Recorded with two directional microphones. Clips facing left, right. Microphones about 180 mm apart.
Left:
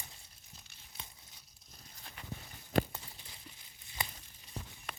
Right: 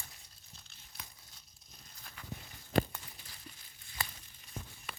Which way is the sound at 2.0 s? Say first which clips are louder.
Left 1 dB; 20° left (ahead or behind).